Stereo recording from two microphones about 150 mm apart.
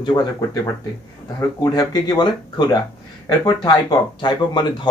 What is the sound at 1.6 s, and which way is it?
Speech, 25° left (ahead or behind).